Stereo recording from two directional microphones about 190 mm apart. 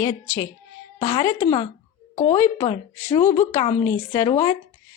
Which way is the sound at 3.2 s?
40° left (ahead or behind).